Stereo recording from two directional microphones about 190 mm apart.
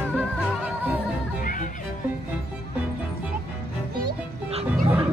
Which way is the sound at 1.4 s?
45° left (ahead or behind).